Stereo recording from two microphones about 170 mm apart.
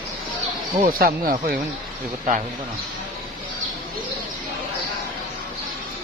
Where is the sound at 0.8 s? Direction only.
60° right (ahead or behind).